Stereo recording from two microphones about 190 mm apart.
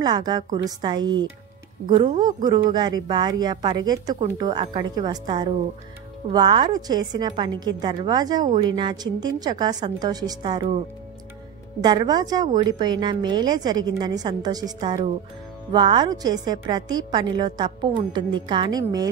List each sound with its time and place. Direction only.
0.0 s a woman's voice: 20° right (ahead or behind)
11.8 s a woman's voice: 20° right (ahead or behind)